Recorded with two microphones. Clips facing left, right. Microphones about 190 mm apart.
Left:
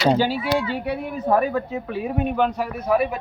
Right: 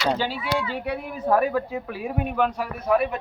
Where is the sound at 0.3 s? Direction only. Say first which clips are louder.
Left 4 dB; 35° left (ahead or behind).